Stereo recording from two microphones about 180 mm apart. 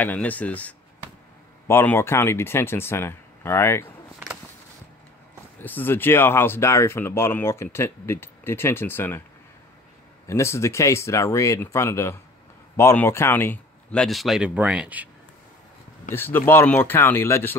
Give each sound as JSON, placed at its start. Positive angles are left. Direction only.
{"t": 0.0, "sound": "speech", "side_deg": 10}
{"t": 5.6, "sound": "speech", "side_deg": 10}
{"t": 10.2, "sound": "speech", "side_deg": 15}
{"t": 16.1, "sound": "speech", "side_deg": 10}